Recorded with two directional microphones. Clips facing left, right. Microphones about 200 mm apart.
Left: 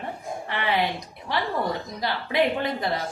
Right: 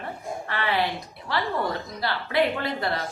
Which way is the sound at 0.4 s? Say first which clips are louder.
Even; 15° left (ahead or behind).